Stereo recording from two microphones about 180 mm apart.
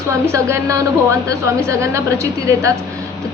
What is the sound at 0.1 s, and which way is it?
A woman's voice, 15° right (ahead or behind).